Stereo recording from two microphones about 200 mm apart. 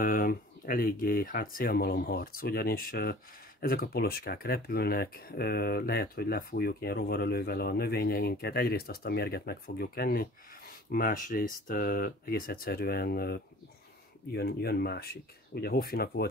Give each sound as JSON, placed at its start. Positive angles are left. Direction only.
{"t": 0.0, "sound": "speech", "side_deg": 45}